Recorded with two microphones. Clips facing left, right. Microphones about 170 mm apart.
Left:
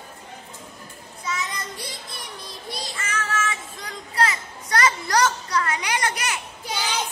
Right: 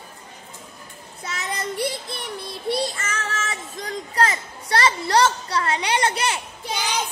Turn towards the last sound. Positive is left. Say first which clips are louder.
# right 2 dB
turn(degrees=-25)  # may be behind; listen again after turning